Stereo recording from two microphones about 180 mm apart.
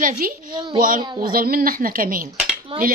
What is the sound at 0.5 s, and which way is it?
Speech, 25° right (ahead or behind).